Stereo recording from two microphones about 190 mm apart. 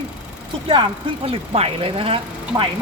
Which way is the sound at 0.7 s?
30° right (ahead or behind).